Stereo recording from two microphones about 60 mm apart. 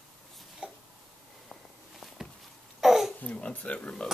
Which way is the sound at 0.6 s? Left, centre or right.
Centre.